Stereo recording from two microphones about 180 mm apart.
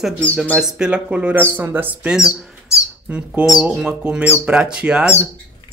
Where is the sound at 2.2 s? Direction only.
15° left (ahead or behind).